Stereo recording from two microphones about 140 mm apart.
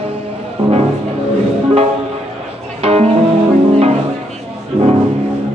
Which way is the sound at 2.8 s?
50° right (ahead or behind).